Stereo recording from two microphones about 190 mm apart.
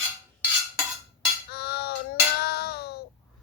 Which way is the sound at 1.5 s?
55° left (ahead or behind).